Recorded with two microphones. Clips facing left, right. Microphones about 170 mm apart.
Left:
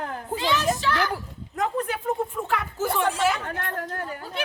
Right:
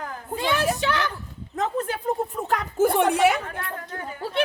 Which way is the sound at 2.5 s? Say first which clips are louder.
Right 9 dB; 50° right (ahead or behind).